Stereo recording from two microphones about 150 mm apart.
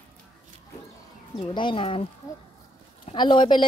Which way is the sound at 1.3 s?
35° left (ahead or behind).